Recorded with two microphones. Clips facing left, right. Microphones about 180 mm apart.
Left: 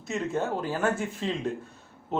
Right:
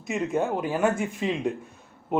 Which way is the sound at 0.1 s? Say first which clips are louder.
Right 3 dB; 15° right (ahead or behind).